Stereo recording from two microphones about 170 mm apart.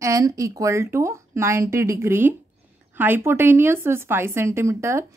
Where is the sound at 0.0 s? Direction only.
20° right (ahead or behind).